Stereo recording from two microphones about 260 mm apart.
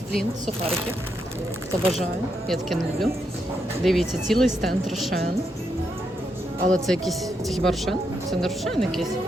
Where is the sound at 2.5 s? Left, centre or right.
Centre.